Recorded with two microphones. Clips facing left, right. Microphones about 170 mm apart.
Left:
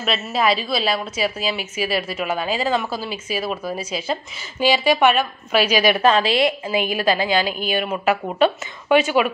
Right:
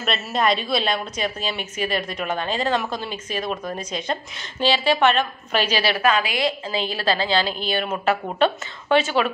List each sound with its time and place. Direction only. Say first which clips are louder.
0.0 s a woman's voice: left 2 dB; 5° left (ahead or behind)
6.0 s a woman's voice: left 4 dB; 30° left (ahead or behind); by 9.3 s 10° left (ahead or behind)